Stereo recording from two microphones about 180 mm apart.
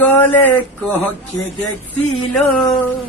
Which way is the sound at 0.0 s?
10° left (ahead or behind).